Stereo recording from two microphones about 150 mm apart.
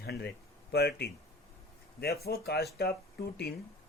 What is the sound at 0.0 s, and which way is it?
Speech, 90° left.